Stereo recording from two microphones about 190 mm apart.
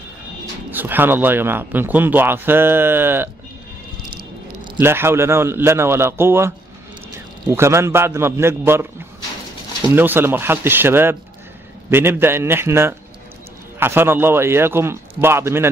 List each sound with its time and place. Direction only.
0.7 s speech: 10° right (ahead or behind)
4.7 s speech: 10° right (ahead or behind)
9.8 s speech: 10° right (ahead or behind)